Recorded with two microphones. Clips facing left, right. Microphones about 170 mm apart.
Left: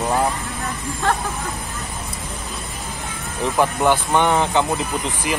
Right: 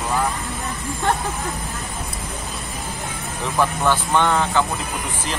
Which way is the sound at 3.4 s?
15° left (ahead or behind).